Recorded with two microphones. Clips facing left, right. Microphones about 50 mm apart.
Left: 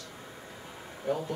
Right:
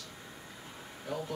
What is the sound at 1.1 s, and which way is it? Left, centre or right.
Speech, left.